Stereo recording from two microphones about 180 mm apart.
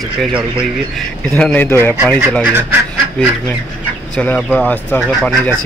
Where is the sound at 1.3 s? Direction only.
10° left (ahead or behind).